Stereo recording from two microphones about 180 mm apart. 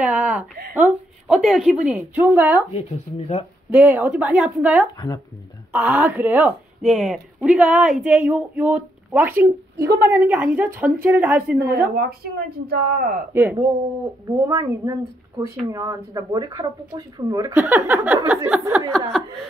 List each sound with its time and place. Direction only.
0.0 s a woman's voice: 10° right (ahead or behind)
3.7 s speech: 10° right (ahead or behind)
4.9 s speech: 20° left (ahead or behind)
5.7 s speech: 10° right (ahead or behind)
11.9 s speech: 60° right (ahead or behind)
13.3 s speech: 10° right (ahead or behind)
18.9 s speech: 5° left (ahead or behind)